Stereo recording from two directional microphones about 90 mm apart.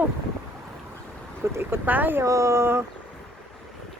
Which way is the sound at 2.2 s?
35° right (ahead or behind).